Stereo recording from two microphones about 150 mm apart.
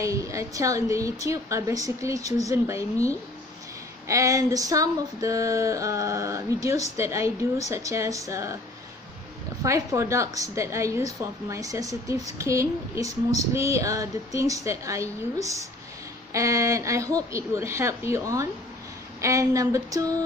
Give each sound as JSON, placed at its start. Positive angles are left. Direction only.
{"t": 0.0, "sound": "a woman's voice", "side_deg": -20}
{"t": 9.6, "sound": "a woman's voice", "side_deg": -20}